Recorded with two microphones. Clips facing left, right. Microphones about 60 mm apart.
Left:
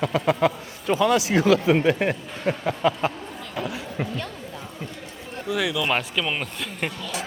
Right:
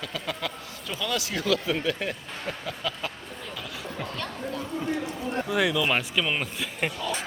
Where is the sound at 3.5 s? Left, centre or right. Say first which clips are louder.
Left 8 dB; left.